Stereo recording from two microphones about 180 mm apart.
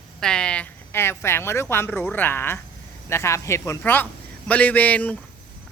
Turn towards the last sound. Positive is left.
turn(degrees=10)  # may be behind; listen again after turning